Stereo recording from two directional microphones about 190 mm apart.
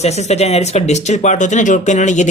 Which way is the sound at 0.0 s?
35° left (ahead or behind).